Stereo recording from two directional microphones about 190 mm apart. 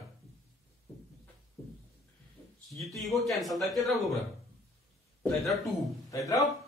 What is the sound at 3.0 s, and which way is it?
Speech, centre (ahead or behind).